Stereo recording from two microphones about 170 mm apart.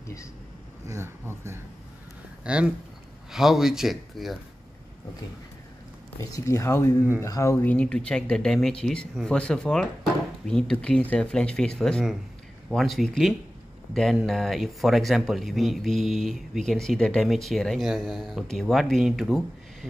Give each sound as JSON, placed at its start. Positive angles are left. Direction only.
{"t": 0.8, "sound": "speech", "side_deg": -15}
{"t": 6.2, "sound": "speech", "side_deg": 20}